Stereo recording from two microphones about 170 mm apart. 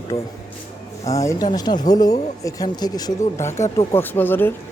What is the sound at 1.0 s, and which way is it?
A man's voice, 20° left (ahead or behind).